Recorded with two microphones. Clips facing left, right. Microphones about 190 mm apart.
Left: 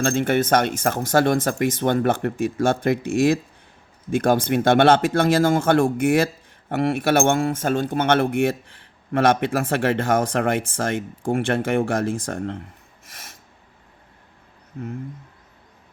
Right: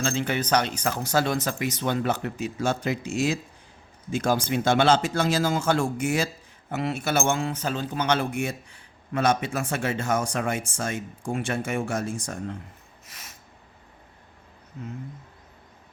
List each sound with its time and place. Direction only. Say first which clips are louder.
0.0 s a man's voice: left 7 dB; 50° left (ahead or behind)